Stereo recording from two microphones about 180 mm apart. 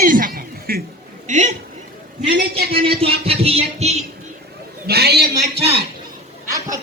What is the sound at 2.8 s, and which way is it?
Speech, 30° right (ahead or behind).